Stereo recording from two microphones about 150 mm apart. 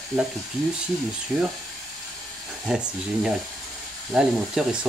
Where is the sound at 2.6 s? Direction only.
5° right (ahead or behind).